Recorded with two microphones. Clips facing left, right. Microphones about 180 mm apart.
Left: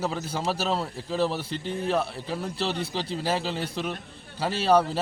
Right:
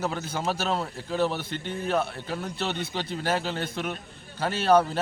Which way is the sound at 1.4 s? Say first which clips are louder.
Left 2 dB; 35° left (ahead or behind).